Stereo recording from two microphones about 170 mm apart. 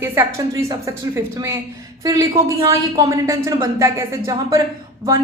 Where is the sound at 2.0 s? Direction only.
20° right (ahead or behind).